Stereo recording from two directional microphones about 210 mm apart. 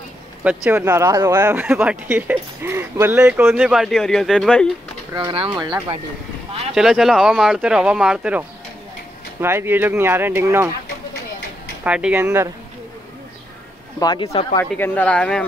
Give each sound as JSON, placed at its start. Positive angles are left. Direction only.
{"t": 0.4, "sound": "speech", "side_deg": -10}
{"t": 5.1, "sound": "speech", "side_deg": -25}
{"t": 6.7, "sound": "speech", "side_deg": 0}
{"t": 11.8, "sound": "speech", "side_deg": -5}
{"t": 13.9, "sound": "speech", "side_deg": 20}
{"t": 14.6, "sound": "speech", "side_deg": 10}